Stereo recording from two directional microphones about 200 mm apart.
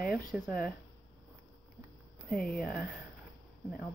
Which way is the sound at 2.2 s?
5° left (ahead or behind).